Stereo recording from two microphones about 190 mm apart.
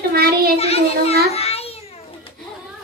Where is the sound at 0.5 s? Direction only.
30° left (ahead or behind).